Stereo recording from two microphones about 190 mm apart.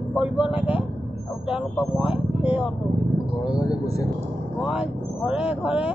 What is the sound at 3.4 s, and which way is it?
Speech, 20° left (ahead or behind).